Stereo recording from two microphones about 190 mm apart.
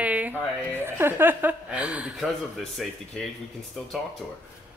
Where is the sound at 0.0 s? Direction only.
10° right (ahead or behind).